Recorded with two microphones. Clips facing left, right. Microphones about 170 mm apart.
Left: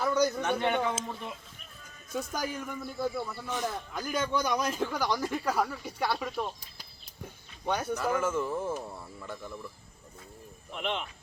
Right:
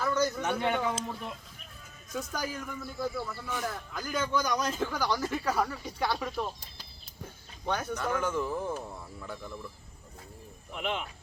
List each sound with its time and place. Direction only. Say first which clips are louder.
0.0 s a sound: left 2 dB; 10° left (ahead or behind)
0.9 s speech: even; centre (ahead or behind); by 4.4 s 20° left (ahead or behind)
4.4 s speech: left 1 dB; 10° left (ahead or behind)
7.6 s speech: left 2 dB; 10° left (ahead or behind)
10.7 s speech: even; 5° right (ahead or behind)